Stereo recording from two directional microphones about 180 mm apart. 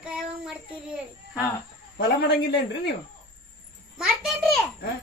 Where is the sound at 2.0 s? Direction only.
65° left (ahead or behind).